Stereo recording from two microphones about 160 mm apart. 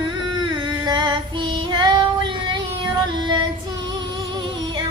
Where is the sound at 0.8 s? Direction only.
30° right (ahead or behind).